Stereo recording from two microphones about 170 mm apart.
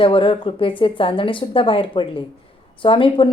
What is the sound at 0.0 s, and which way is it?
Speech, 30° left (ahead or behind).